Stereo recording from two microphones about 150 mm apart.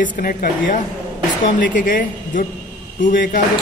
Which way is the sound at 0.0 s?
65° left (ahead or behind).